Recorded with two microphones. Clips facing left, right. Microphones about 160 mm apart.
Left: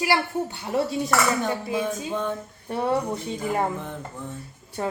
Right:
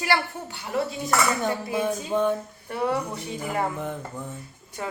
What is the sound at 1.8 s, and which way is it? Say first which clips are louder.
Speech: right 3 dB; 15° right (ahead or behind).